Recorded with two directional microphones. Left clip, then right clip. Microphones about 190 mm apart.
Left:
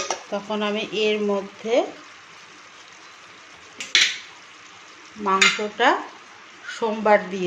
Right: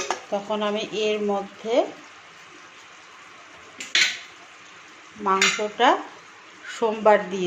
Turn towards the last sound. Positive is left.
turn(degrees=-5)  # may be behind; listen again after turning